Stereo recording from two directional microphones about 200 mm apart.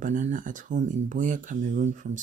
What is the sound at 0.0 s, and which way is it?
Speech, 40° right (ahead or behind).